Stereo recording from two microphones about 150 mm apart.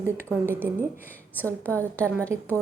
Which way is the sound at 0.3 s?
15° right (ahead or behind).